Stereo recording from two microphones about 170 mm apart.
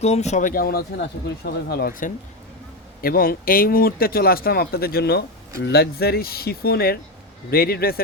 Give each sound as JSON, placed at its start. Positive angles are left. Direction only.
{"t": 0.0, "sound": "speech", "side_deg": 40}